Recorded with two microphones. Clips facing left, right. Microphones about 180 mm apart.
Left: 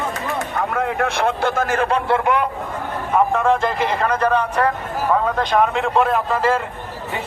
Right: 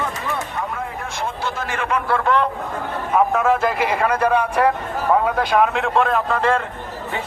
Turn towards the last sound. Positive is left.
turn(degrees=5)  # may be behind; listen again after turning